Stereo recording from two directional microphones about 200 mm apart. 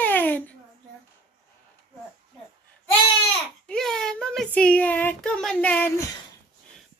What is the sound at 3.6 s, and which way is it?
Speech, 5° left (ahead or behind).